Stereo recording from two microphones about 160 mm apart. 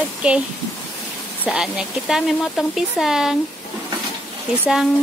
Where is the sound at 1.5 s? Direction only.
5° right (ahead or behind).